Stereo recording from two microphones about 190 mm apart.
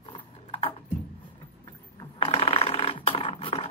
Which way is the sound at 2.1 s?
35° left (ahead or behind).